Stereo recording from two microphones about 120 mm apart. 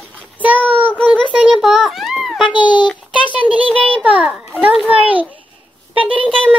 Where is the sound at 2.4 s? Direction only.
40° left (ahead or behind).